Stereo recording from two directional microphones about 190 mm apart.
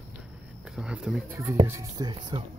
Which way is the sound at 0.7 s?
5° right (ahead or behind).